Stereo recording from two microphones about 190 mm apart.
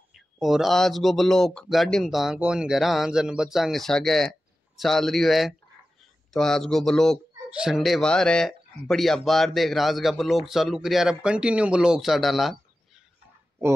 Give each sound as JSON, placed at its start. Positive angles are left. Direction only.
{"t": 0.1, "sound": "speech", "side_deg": 0}